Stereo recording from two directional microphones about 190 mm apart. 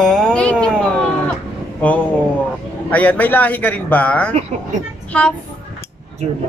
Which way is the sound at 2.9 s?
10° left (ahead or behind).